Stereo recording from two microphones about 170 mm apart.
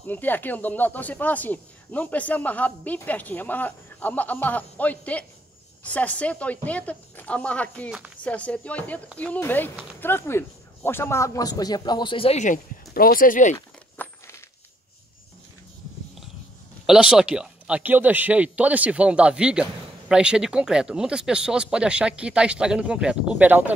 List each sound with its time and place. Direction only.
0.0 s speech: 10° left (ahead or behind); by 12.5 s 40° left (ahead or behind)
12.9 s speech: 60° left (ahead or behind)
13.9 s a sound: 15° left (ahead or behind)
16.8 s speech: 5° right (ahead or behind)